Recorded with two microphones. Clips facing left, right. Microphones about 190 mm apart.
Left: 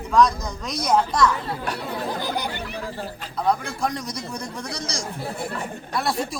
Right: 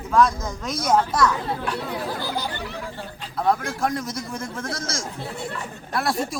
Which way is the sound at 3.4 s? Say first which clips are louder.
Right 1 dB; centre (ahead or behind).